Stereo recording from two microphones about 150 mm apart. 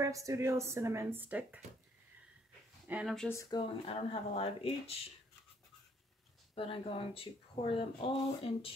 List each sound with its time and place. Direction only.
0.0 s speech: 20° right (ahead or behind)
2.9 s speech: 10° right (ahead or behind)
3.3 s speech: 25° left (ahead or behind)
3.6 s speech: 40° left (ahead or behind)
6.5 s speech: 35° left (ahead or behind)